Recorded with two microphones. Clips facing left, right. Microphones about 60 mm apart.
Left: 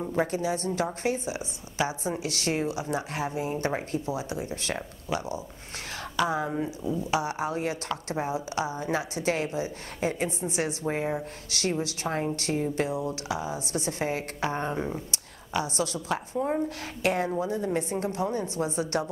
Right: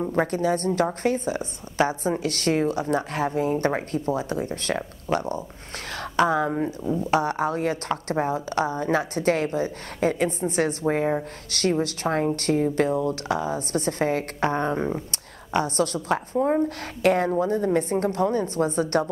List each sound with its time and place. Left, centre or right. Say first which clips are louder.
0.1 s a woman's voice: right 3 dB; right